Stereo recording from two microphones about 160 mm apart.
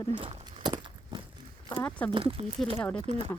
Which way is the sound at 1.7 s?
10° left (ahead or behind).